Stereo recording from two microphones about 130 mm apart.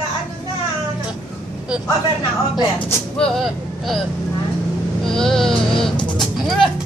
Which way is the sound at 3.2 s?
5° left (ahead or behind).